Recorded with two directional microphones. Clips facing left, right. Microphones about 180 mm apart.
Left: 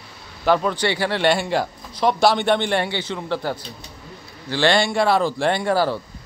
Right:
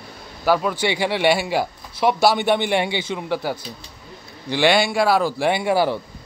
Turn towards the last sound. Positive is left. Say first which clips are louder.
# right 1 dB
turn(degrees=-10)  # may be behind; listen again after turning